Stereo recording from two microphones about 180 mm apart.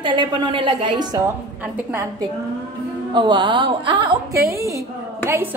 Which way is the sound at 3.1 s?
25° right (ahead or behind).